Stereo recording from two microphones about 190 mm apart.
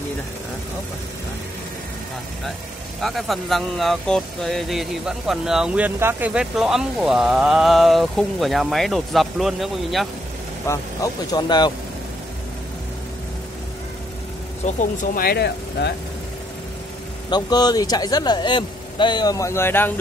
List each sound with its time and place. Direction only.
3.0 s speech: centre (ahead or behind)
10.7 s speech: 20° left (ahead or behind)
14.7 s speech: 40° left (ahead or behind); by 15.9 s 60° left (ahead or behind)
17.3 s speech: 20° left (ahead or behind)